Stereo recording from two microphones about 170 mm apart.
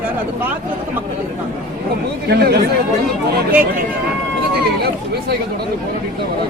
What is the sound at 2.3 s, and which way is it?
Speech, 70° right (ahead or behind).